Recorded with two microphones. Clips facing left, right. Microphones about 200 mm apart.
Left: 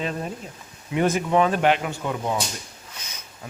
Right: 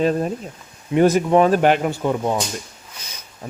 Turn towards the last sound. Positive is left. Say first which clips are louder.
# right 7 dB
turn(degrees=-30)  # may be behind; listen again after turning